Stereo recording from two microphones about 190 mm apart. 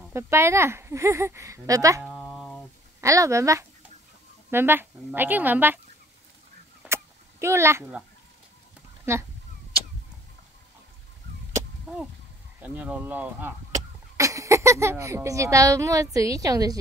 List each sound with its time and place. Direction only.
0.1 s speech: 15° right (ahead or behind)
2.0 s a sound: centre (ahead or behind)
3.0 s speech: 15° right (ahead or behind)
6.8 s a sound: 15° right (ahead or behind)
9.1 s speech: 15° right (ahead or behind)
12.6 s speech: 10° right (ahead or behind)